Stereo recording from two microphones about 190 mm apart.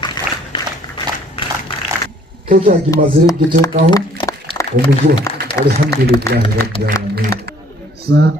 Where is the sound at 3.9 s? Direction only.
20° left (ahead or behind).